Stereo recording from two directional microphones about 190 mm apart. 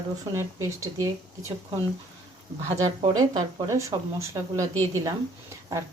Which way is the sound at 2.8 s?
20° right (ahead or behind).